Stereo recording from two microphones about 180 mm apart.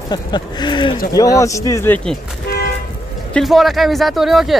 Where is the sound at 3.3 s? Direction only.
Centre (ahead or behind).